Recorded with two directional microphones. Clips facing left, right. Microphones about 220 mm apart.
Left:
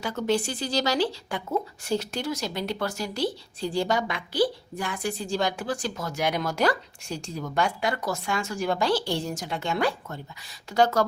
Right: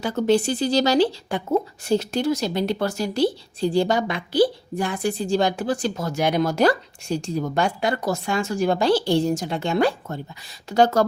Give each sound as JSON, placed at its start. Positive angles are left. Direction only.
{"t": 0.0, "sound": "speech", "side_deg": -30}